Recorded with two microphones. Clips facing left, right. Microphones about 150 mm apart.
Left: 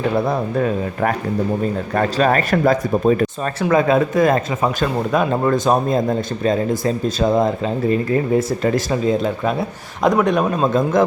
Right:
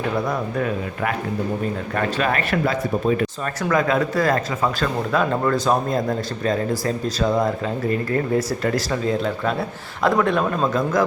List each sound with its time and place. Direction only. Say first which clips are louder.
0.3 s speech: left 4 dB; 30° left (ahead or behind)
3.4 s speech: left 5 dB; 25° left (ahead or behind)